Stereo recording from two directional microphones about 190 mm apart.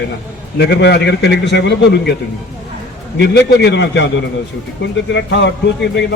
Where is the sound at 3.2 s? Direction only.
60° left (ahead or behind).